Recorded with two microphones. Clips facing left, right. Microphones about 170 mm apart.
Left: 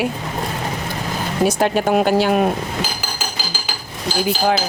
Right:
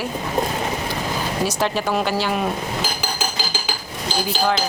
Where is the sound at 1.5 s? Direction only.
55° left (ahead or behind).